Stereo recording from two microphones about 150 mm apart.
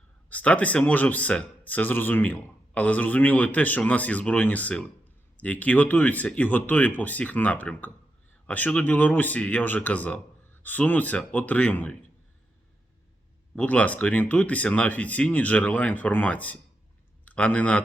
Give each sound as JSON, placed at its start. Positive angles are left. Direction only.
{"t": 0.3, "sound": "speech", "side_deg": 10}
{"t": 13.6, "sound": "a man's voice", "side_deg": 10}